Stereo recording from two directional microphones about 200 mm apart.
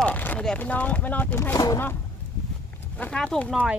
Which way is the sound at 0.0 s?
5° left (ahead or behind).